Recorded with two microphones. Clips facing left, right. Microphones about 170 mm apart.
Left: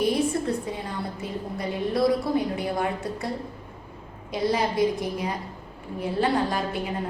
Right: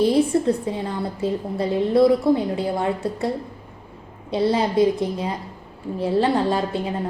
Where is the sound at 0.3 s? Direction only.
30° right (ahead or behind).